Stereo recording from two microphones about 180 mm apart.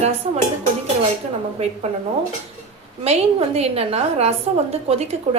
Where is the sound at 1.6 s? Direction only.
35° right (ahead or behind).